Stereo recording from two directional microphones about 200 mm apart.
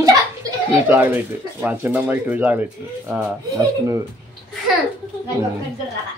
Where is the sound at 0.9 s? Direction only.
10° right (ahead or behind).